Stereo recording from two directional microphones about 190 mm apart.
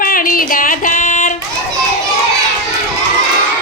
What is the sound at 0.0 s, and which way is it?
Music, 50° left (ahead or behind).